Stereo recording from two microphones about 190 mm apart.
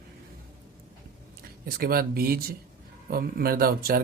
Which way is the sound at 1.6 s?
50° right (ahead or behind).